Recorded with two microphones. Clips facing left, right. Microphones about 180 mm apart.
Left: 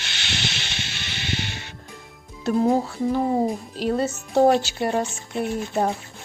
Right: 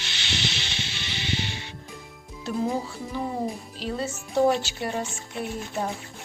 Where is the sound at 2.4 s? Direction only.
60° left (ahead or behind).